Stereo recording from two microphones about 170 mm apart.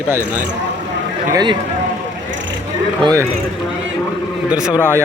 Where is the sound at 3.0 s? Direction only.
20° right (ahead or behind).